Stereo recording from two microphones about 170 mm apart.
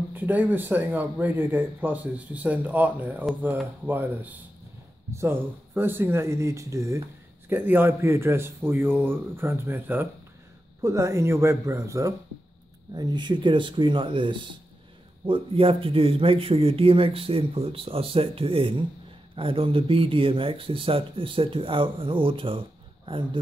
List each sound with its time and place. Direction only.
0.1 s speech: 10° right (ahead or behind); by 23.4 s 30° right (ahead or behind)